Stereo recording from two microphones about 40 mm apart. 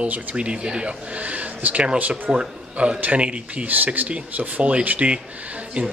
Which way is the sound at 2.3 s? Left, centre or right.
Right.